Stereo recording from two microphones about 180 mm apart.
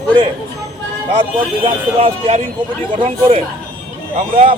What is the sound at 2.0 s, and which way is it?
Speech, 35° right (ahead or behind).